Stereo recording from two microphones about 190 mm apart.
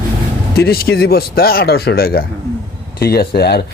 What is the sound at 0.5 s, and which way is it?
Speech, 55° left (ahead or behind).